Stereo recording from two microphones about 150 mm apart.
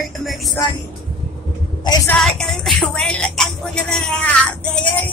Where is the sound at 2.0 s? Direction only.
5° left (ahead or behind).